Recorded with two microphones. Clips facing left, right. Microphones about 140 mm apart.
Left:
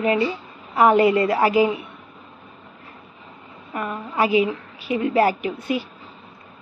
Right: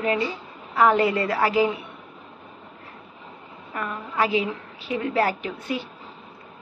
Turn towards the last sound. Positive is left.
turn(degrees=10)  # may be behind; listen again after turning